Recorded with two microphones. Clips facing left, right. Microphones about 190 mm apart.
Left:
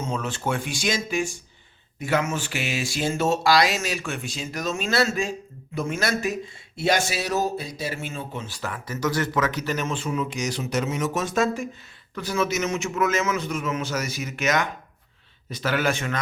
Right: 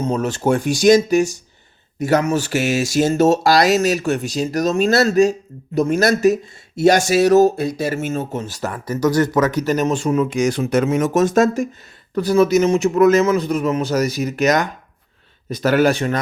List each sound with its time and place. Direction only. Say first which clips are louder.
0.0 s speech: right 9 dB; 40° right (ahead or behind)